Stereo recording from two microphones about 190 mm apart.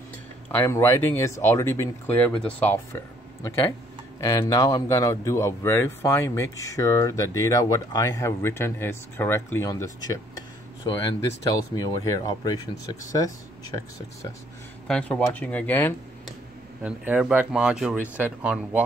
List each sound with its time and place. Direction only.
0.6 s speech: 15° left (ahead or behind)
4.2 s speech: 15° left (ahead or behind)
14.9 s speech: 5° left (ahead or behind)
16.8 s speech: 5° right (ahead or behind)